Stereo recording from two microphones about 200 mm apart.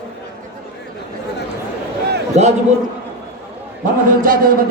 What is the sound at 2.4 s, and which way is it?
Speech, 35° right (ahead or behind).